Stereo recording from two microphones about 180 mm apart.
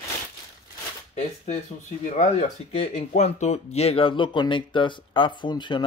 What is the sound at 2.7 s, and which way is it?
Speech, 40° left (ahead or behind).